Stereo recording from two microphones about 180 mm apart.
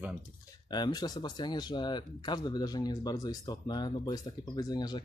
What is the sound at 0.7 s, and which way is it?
Speech, 25° left (ahead or behind).